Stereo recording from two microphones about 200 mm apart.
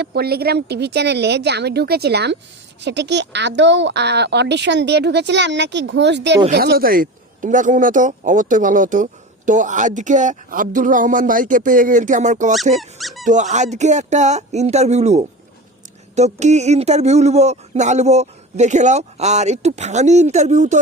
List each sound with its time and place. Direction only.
0.0 s speech: 50° right (ahead or behind)
12.8 s speech: centre (ahead or behind)
13.2 s speech: 35° right (ahead or behind)